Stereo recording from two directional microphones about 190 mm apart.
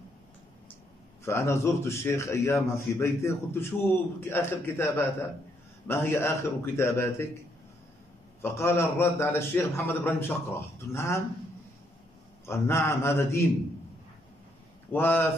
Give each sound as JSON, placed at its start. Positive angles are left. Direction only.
{"t": 1.2, "sound": "a man's voice", "side_deg": 15}
{"t": 8.4, "sound": "a man's voice", "side_deg": 15}
{"t": 12.4, "sound": "a man's voice", "side_deg": 15}
{"t": 14.9, "sound": "a man's voice", "side_deg": 10}